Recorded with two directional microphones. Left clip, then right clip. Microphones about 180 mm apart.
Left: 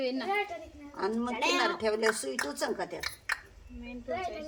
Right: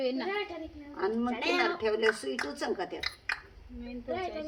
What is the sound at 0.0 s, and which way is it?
Speech, 15° right (ahead or behind).